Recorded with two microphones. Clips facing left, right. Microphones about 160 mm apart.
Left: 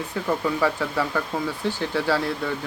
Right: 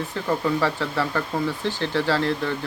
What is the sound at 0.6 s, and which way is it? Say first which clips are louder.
Speech: left 1 dB; 10° left (ahead or behind).